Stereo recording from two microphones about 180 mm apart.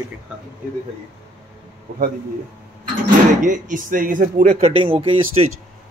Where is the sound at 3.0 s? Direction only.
45° right (ahead or behind); by 5.4 s 30° right (ahead or behind).